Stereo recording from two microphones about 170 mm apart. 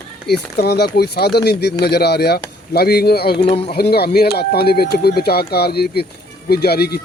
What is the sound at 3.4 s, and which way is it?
Speech, 35° left (ahead or behind).